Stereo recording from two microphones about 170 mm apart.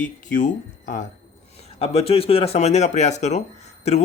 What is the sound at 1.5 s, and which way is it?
A man's voice, 35° left (ahead or behind).